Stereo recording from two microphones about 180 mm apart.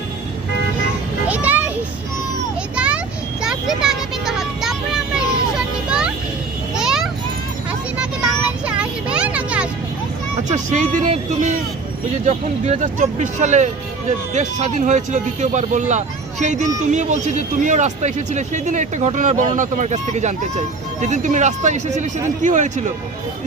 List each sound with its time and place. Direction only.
1.3 s music: 10° right (ahead or behind)
2.7 s vehicle: 5° right (ahead or behind)
3.4 s a sound: 5° right (ahead or behind)
6.7 s children playing: 5° right (ahead or behind)
7.7 s a sound: 5° right (ahead or behind)
10.3 s vehicle: 40° right (ahead or behind)
12.2 s speech: 40° right (ahead or behind)